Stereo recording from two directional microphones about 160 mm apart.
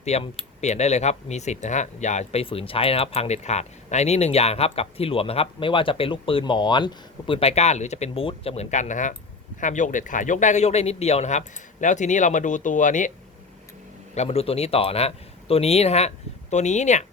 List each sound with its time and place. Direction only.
0.0 s speech: 40° left (ahead or behind)
14.2 s speech: 40° left (ahead or behind)